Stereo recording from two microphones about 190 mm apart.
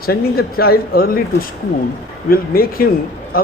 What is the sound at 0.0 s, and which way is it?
A man's voice, 55° left (ahead or behind).